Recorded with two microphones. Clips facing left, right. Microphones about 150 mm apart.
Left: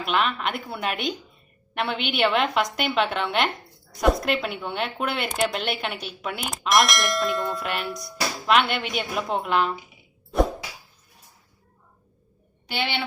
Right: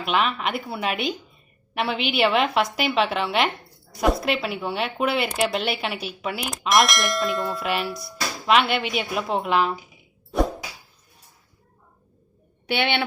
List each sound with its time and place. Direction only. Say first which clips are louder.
0.0 s speech: right 1 dB; centre (ahead or behind)
12.6 s a woman's voice: right 5 dB; 65° right (ahead or behind)